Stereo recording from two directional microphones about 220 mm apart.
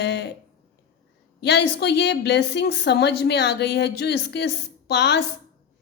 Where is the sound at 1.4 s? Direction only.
50° left (ahead or behind).